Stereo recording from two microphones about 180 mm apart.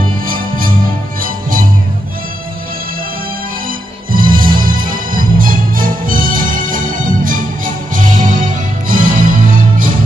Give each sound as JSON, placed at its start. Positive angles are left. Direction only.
{"t": 0.3, "sound": "music", "side_deg": -50}
{"t": 4.1, "sound": "music", "side_deg": -50}